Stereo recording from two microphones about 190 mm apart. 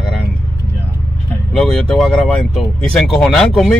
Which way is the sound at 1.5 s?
Centre (ahead or behind).